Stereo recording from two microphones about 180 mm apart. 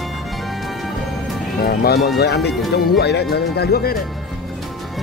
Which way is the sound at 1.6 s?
55° left (ahead or behind).